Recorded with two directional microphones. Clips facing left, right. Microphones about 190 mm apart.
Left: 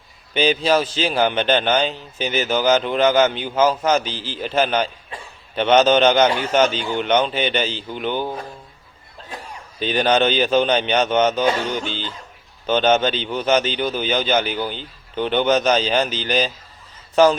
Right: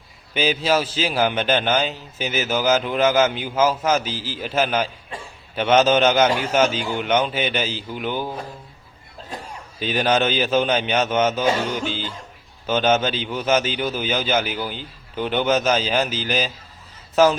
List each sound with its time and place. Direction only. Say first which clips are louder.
0.3 s a man's voice: left 3 dB; 5° right (ahead or behind)
9.8 s a man's voice: left 2 dB; 5° right (ahead or behind)